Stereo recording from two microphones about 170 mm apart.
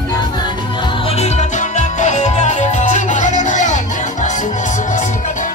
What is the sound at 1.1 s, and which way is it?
Music, 40° left (ahead or behind).